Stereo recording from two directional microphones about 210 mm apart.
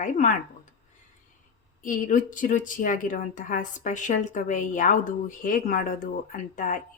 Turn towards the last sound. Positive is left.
turn(degrees=35)  # may be behind; listen again after turning